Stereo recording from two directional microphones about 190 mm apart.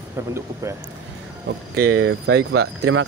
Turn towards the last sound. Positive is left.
turn(degrees=-90)